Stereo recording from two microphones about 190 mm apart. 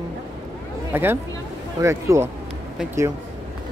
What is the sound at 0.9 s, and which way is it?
Speech, 10° right (ahead or behind).